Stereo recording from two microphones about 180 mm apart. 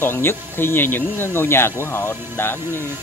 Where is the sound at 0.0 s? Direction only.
10° left (ahead or behind).